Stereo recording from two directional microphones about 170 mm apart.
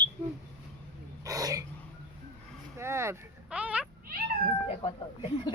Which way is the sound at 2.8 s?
15° right (ahead or behind).